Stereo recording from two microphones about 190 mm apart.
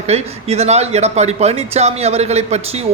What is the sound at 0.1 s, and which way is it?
A man's voice, 35° right (ahead or behind).